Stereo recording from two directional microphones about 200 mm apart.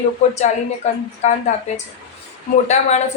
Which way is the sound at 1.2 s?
35° left (ahead or behind).